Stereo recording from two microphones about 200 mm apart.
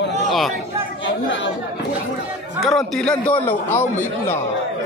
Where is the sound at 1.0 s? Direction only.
70° left (ahead or behind).